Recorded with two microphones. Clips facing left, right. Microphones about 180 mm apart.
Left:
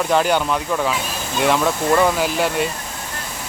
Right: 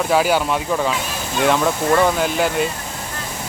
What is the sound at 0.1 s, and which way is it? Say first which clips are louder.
Speech: right 1 dB; 5° right (ahead or behind).